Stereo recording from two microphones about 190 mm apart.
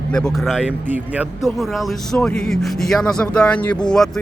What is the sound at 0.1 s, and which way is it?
Speech, 5° left (ahead or behind).